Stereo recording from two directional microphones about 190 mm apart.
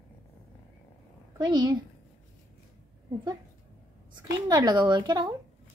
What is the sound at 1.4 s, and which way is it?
Speech, 20° right (ahead or behind).